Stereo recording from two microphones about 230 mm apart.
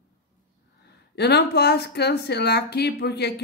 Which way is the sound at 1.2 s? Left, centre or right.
Left.